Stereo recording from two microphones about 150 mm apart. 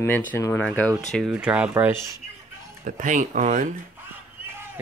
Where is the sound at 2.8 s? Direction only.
60° right (ahead or behind).